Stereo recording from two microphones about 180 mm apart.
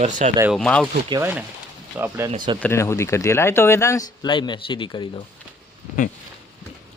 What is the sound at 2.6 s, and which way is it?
Speech, 15° left (ahead or behind).